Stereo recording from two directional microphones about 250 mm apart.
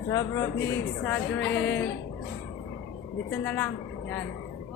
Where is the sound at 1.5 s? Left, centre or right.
Left.